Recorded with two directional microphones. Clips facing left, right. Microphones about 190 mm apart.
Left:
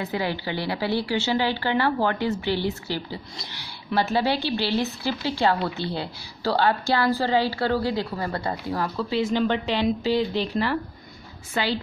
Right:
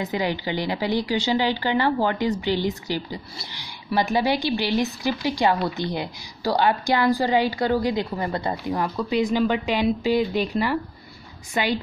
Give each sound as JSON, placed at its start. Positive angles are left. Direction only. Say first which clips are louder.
{"t": 0.0, "sound": "speech", "louder": "right 2 dB", "side_deg": -15}